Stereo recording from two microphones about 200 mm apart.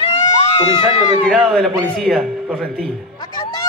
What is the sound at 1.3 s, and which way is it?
A man's voice, centre (ahead or behind).